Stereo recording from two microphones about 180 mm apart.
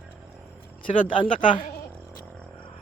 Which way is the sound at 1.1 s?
30° left (ahead or behind).